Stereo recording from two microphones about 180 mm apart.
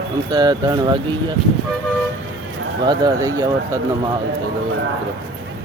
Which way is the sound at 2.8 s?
25° right (ahead or behind).